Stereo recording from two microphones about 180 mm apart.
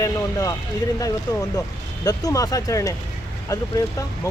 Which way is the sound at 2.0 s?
20° left (ahead or behind).